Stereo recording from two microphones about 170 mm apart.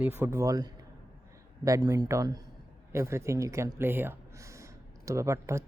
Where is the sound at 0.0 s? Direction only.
15° right (ahead or behind).